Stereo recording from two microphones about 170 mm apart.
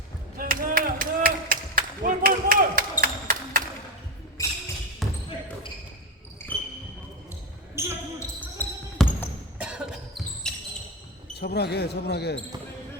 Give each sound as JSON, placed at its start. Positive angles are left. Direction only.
{"t": 0.3, "sound": "a sound", "side_deg": -55}
{"t": 4.4, "sound": "a sound", "side_deg": 20}
{"t": 5.0, "sound": "basketball bounce", "side_deg": 0}
{"t": 6.4, "sound": "basketball bounce", "side_deg": 15}
{"t": 7.8, "sound": "basketball bounce", "side_deg": -15}
{"t": 8.4, "sound": "basketball bounce", "side_deg": 10}
{"t": 9.6, "sound": "basketball bounce", "side_deg": -5}
{"t": 11.3, "sound": "speech", "side_deg": 75}